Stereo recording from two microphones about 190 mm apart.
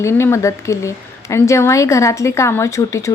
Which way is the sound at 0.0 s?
15° left (ahead or behind).